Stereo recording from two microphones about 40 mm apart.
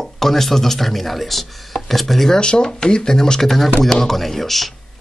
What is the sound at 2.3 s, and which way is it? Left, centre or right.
Speech, left.